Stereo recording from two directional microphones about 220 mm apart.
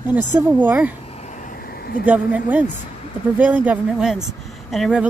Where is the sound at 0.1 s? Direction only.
10° right (ahead or behind).